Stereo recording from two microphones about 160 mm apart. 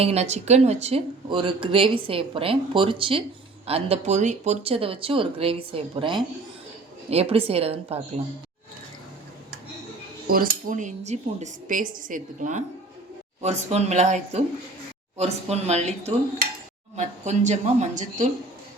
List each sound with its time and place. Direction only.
0.0 s speech: 40° right (ahead or behind)
10.2 s speech: 65° right (ahead or behind); by 18.3 s 50° right (ahead or behind)